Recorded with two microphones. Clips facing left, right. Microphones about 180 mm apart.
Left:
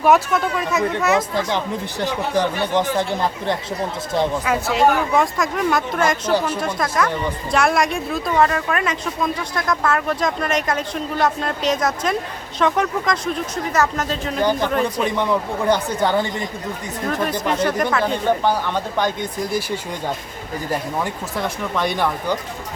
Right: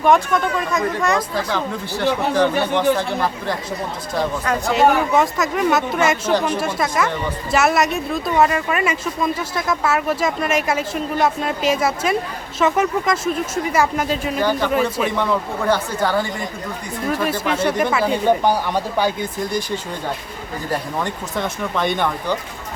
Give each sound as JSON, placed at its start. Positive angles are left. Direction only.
{"t": 0.0, "sound": "speech", "side_deg": 5}
{"t": 2.3, "sound": "speech", "side_deg": 15}
{"t": 4.4, "sound": "speech", "side_deg": 5}
{"t": 15.2, "sound": "speech", "side_deg": 15}
{"t": 17.1, "sound": "speech", "side_deg": -5}
{"t": 21.0, "sound": "speech", "side_deg": 0}